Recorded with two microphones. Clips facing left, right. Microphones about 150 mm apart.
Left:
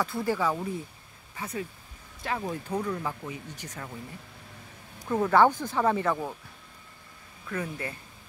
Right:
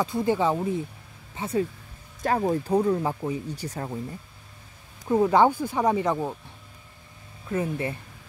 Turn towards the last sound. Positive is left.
turn(degrees=-25)  # may be behind; listen again after turning